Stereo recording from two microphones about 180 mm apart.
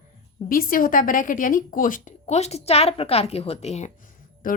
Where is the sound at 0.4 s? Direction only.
55° left (ahead or behind).